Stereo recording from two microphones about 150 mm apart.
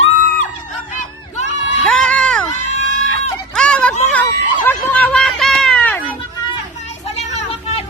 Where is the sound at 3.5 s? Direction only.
5° left (ahead or behind).